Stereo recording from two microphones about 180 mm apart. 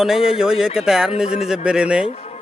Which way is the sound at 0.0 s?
Centre (ahead or behind).